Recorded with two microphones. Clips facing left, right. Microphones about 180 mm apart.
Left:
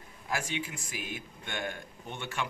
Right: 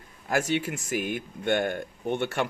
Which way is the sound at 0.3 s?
65° right (ahead or behind).